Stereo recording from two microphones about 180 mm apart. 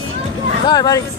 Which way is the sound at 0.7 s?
20° left (ahead or behind).